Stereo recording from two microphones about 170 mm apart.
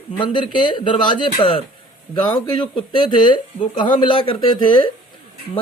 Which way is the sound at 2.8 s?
25° left (ahead or behind).